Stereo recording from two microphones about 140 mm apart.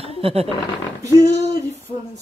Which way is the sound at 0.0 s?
45° right (ahead or behind).